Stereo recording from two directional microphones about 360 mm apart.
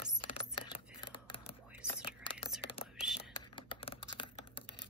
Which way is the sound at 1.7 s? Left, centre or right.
Centre.